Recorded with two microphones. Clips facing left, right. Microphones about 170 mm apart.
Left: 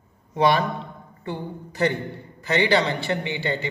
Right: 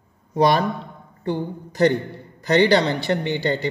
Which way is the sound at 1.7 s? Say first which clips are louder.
Right 5 dB; 40° right (ahead or behind).